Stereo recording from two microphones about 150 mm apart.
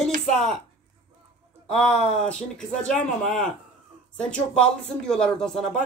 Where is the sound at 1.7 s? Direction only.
5° left (ahead or behind).